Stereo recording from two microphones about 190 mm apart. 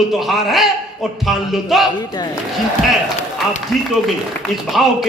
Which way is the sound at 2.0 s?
20° left (ahead or behind).